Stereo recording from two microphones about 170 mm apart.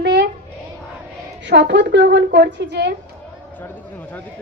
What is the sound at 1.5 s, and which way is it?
A woman's voice, 90° right.